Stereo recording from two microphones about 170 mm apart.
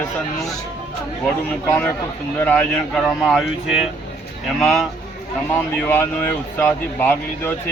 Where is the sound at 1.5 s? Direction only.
10° left (ahead or behind).